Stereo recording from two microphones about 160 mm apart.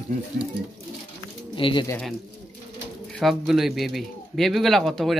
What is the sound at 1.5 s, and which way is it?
Speech, 30° left (ahead or behind).